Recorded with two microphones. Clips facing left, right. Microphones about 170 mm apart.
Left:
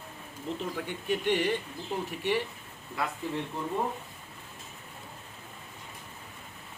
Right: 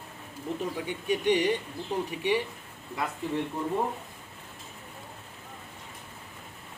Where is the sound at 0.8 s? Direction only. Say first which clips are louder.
Right 2 dB; 15° right (ahead or behind).